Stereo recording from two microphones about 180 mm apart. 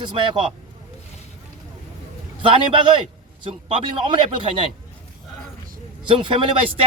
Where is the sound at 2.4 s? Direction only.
30° right (ahead or behind).